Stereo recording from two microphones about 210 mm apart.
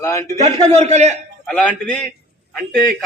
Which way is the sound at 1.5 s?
5° left (ahead or behind).